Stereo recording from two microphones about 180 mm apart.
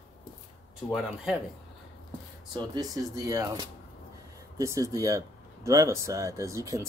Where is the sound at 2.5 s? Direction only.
25° right (ahead or behind).